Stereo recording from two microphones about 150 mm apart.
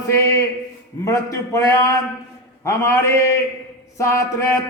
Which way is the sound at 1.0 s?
20° left (ahead or behind).